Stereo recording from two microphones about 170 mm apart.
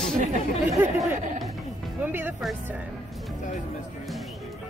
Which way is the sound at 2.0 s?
10° right (ahead or behind).